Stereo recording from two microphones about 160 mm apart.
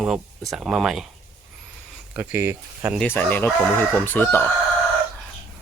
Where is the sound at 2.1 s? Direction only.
15° right (ahead or behind).